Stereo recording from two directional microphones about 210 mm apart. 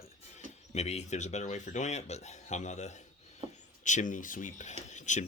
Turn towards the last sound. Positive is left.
turn(degrees=35)  # may be behind; listen again after turning